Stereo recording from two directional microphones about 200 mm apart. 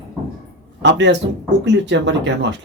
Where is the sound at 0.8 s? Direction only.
60° right (ahead or behind).